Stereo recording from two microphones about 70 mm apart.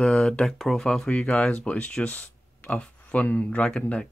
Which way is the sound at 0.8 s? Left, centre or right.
Centre.